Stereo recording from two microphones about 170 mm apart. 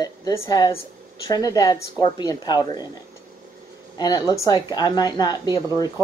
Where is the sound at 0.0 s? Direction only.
20° left (ahead or behind).